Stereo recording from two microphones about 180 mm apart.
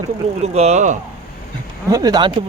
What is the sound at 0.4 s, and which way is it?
Speech, 35° right (ahead or behind).